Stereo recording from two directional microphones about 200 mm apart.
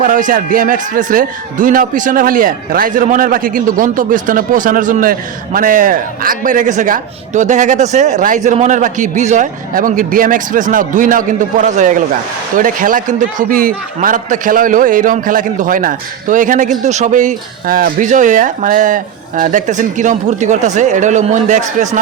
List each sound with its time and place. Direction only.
0.0 s a man's voice: 40° right (ahead or behind)